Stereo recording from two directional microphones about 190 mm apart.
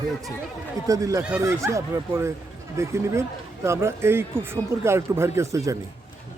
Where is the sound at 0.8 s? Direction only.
15° right (ahead or behind).